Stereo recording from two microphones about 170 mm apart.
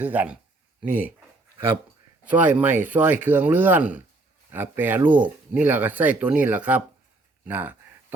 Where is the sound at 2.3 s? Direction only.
10° right (ahead or behind).